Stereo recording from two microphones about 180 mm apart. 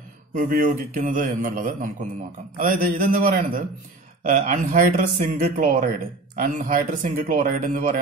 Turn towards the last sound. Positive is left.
turn(degrees=-45)  # may be behind; listen again after turning